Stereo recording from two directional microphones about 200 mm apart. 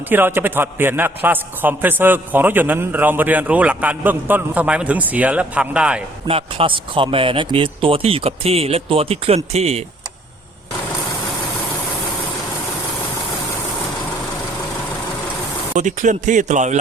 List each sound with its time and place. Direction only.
0.1 s a man's voice: 10° right (ahead or behind)
6.2 s speech: 30° right (ahead or behind)
15.7 s speech: 40° right (ahead or behind)